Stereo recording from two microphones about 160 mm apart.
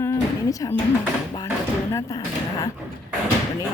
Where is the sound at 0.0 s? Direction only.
20° left (ahead or behind).